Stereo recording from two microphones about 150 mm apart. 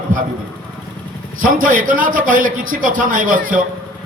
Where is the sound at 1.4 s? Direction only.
65° right (ahead or behind).